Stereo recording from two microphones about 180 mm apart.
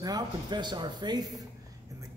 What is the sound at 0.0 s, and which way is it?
A man's voice, 25° right (ahead or behind).